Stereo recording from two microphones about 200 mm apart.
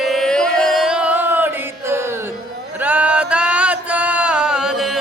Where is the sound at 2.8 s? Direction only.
5° right (ahead or behind).